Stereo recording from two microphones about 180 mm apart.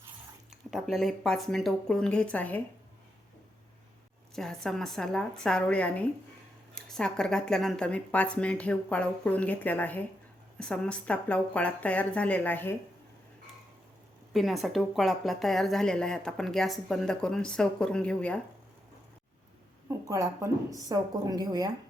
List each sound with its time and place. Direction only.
0.7 s speech: centre (ahead or behind)
4.4 s a woman's voice: centre (ahead or behind)
14.3 s speech: centre (ahead or behind)
19.9 s a woman's voice: 15° right (ahead or behind)